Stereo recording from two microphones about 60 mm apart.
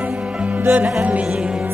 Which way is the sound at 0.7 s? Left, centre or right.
Right.